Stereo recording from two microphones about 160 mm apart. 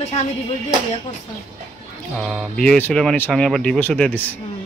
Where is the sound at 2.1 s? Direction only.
Centre (ahead or behind).